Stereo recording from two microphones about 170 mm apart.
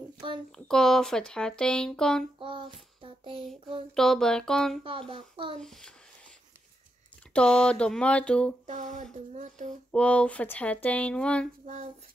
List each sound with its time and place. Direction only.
0.7 s speech: 5° left (ahead or behind)
2.3 s child singing: 30° right (ahead or behind)
3.9 s speech: 5° left (ahead or behind)
4.8 s speech: 30° right (ahead or behind)
5.6 s speech: 5° left (ahead or behind)
7.3 s speech: 5° left (ahead or behind)
8.6 s speech: 45° right (ahead or behind)
9.8 s speech: 5° left (ahead or behind)
11.6 s speech: 45° right (ahead or behind)